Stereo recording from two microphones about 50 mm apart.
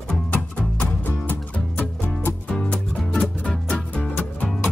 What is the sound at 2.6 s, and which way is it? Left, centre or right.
Music, left.